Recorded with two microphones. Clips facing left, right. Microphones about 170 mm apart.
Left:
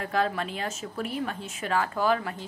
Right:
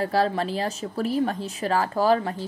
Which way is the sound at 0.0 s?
35° right (ahead or behind).